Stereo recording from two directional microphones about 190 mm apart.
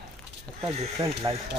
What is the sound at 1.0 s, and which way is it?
Speech, 20° right (ahead or behind).